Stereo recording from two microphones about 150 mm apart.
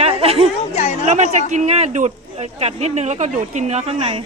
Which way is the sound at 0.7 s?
45° left (ahead or behind).